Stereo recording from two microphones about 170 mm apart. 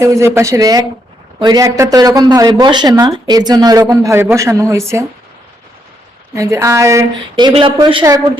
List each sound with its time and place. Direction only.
0.0 s speech: 20° right (ahead or behind)
6.3 s speech: 15° right (ahead or behind)